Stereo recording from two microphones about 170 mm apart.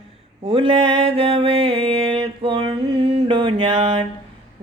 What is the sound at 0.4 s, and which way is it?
Mantra, 30° right (ahead or behind).